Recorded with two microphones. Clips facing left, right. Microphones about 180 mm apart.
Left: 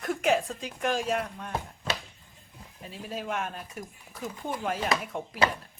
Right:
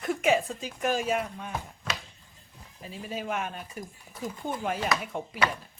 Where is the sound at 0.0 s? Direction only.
Centre (ahead or behind).